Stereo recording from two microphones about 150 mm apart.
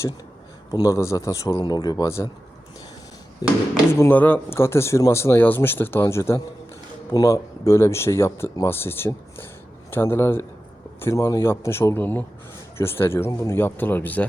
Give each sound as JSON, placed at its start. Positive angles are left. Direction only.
{"t": 0.7, "sound": "a man's voice", "side_deg": 25}
{"t": 3.4, "sound": "a man's voice", "side_deg": 25}